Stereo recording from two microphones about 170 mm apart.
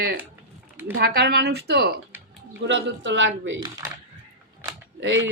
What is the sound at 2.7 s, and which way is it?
Speech, 90° right.